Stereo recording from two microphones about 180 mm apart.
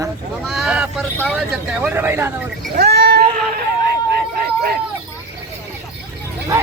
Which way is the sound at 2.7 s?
65° right (ahead or behind).